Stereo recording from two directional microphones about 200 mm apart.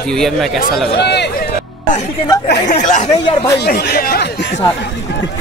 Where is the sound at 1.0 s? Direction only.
60° left (ahead or behind).